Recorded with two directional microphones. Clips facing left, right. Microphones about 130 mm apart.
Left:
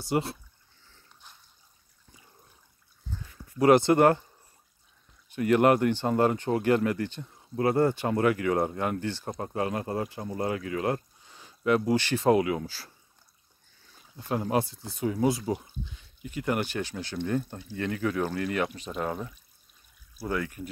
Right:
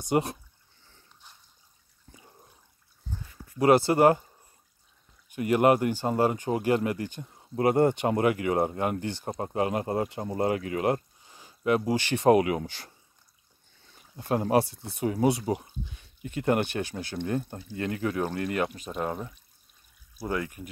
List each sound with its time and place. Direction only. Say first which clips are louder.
0.0 s speech: right 2 dB; 15° right (ahead or behind)
3.1 s a sound: right 1 dB; 15° right (ahead or behind)
3.8 s speech: even; 10° right (ahead or behind)
5.3 s speech: even; 10° right (ahead or behind)
7.5 s speech: right 2 dB; 25° right (ahead or behind)
11.3 s speech: even; 15° right (ahead or behind)
14.3 s speech: right 3 dB; 30° right (ahead or behind)
16.2 s speech: right 2 dB; 50° right (ahead or behind)
17.1 s speech: left 2 dB; 25° right (ahead or behind)
20.2 s speech: even; 20° right (ahead or behind)